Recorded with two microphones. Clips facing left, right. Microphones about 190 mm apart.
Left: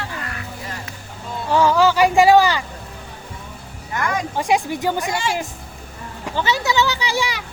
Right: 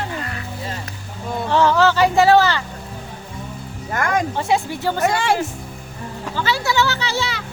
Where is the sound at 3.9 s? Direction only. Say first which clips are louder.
Right 3 dB; 50° right (ahead or behind).